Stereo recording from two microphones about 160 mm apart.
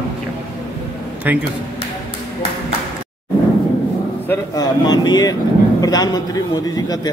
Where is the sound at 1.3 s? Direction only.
10° right (ahead or behind).